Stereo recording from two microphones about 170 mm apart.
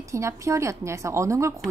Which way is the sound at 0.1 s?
15° right (ahead or behind).